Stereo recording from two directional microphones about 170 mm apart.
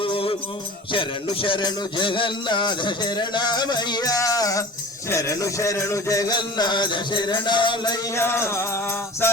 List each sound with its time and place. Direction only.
0.0 s music: 30° left (ahead or behind)
8.1 s music: 15° left (ahead or behind)